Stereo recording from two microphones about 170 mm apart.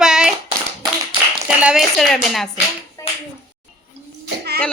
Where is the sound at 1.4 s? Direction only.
5° right (ahead or behind).